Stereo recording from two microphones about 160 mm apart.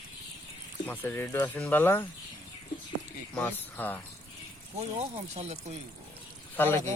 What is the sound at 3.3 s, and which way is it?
Speech, 10° left (ahead or behind).